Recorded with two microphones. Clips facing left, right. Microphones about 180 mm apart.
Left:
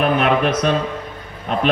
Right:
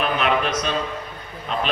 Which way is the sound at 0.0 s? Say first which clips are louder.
Left 5 dB; 50° left (ahead or behind).